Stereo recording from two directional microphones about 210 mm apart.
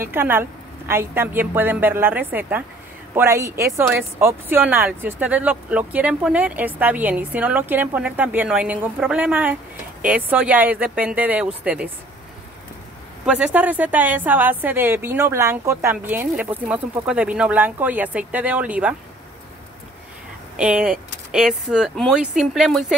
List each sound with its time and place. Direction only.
0.1 s speech: 10° right (ahead or behind)
13.2 s speech: 5° right (ahead or behind)
20.5 s speech: 5° right (ahead or behind)